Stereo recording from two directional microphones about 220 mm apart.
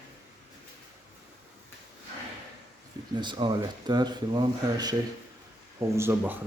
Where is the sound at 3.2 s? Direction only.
20° right (ahead or behind).